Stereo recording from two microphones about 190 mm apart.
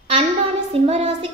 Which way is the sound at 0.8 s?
35° right (ahead or behind).